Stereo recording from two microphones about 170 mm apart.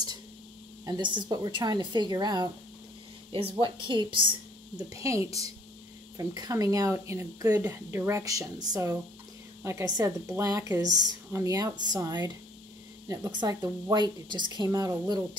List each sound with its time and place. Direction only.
1.1 s speech: 25° right (ahead or behind)
4.8 s speech: 20° right (ahead or behind)